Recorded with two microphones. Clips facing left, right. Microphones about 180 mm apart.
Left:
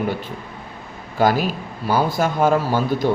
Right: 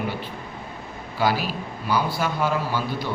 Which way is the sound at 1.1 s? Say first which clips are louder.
Left 5 dB; 45° left (ahead or behind).